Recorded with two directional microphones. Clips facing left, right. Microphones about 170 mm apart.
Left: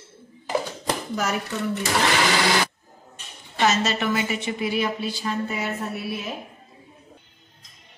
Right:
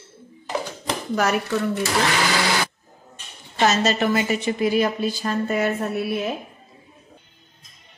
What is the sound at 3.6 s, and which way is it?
A woman's voice, 40° right (ahead or behind).